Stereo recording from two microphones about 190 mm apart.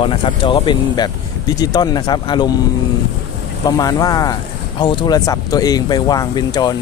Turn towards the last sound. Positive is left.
turn(degrees=20)  # may be behind; listen again after turning